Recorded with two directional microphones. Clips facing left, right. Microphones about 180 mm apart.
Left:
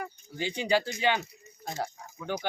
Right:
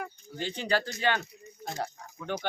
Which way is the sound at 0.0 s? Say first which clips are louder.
Left 1 dB; 10° left (ahead or behind).